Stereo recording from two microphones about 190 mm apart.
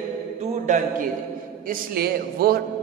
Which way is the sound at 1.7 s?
50° right (ahead or behind).